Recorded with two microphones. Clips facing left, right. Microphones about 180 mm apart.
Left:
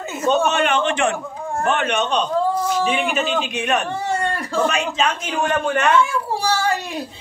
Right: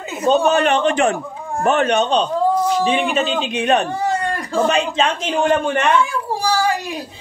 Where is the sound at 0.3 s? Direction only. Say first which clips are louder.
Right 3 dB; 35° right (ahead or behind).